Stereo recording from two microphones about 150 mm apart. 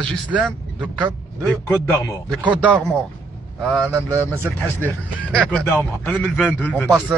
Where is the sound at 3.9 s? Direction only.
15° right (ahead or behind).